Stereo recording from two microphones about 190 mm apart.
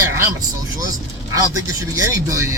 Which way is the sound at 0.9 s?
20° right (ahead or behind).